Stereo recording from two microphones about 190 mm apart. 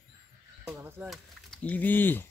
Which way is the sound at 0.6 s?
10° right (ahead or behind).